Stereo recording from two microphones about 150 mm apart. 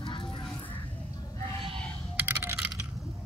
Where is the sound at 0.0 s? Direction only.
35° left (ahead or behind).